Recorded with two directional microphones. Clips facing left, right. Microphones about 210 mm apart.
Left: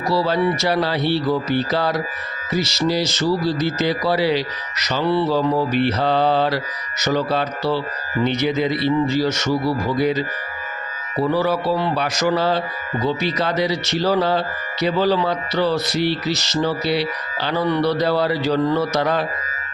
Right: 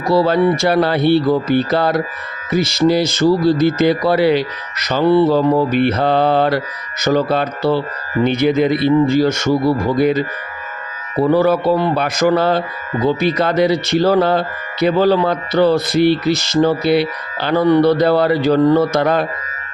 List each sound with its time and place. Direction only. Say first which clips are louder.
0.1 s a man's voice: right 6 dB; 50° right (ahead or behind)